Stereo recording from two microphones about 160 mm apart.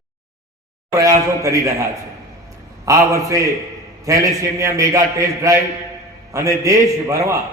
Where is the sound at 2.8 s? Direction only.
20° right (ahead or behind).